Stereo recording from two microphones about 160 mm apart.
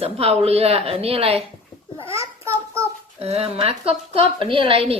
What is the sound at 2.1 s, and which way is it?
Speech, 15° right (ahead or behind).